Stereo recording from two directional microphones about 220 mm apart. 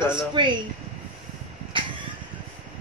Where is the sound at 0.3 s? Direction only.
20° right (ahead or behind).